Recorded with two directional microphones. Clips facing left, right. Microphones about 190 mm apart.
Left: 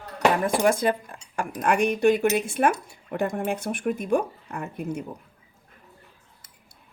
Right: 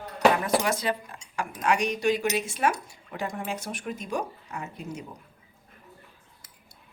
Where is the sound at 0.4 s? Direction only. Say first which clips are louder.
Left 5 dB; 50° left (ahead or behind).